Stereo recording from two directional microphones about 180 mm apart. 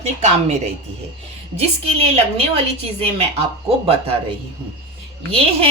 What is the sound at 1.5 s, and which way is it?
Speech, 35° right (ahead or behind).